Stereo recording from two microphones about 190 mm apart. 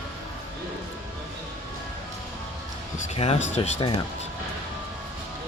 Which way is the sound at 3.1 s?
35° left (ahead or behind).